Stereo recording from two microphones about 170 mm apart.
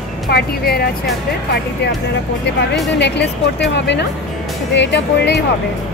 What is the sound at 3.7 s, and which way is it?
Speech, 90° left.